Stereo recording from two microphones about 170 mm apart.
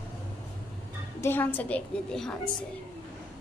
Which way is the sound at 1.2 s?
10° left (ahead or behind).